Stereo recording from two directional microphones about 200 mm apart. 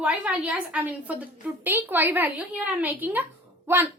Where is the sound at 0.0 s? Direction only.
5° right (ahead or behind).